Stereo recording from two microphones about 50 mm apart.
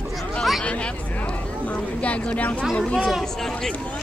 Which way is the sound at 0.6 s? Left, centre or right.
Left.